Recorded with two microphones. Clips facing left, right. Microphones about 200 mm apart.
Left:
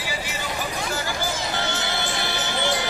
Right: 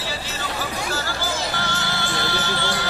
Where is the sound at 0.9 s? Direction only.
20° left (ahead or behind).